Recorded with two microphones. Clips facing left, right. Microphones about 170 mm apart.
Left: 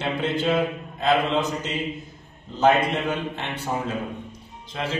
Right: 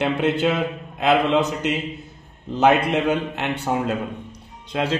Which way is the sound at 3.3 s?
70° right (ahead or behind).